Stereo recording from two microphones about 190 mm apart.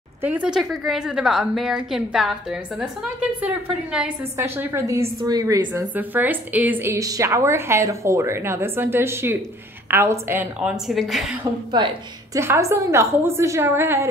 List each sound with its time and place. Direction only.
0.2 s a woman's voice: 10° right (ahead or behind)
11.7 s a woman's voice: 20° right (ahead or behind)